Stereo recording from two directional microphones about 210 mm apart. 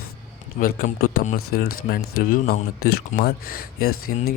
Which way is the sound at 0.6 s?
45° left (ahead or behind).